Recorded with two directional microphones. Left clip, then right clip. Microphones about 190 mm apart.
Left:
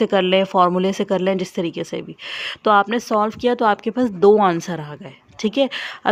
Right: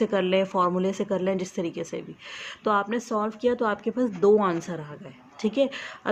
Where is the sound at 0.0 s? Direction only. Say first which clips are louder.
Left 7 dB; 45° left (ahead or behind).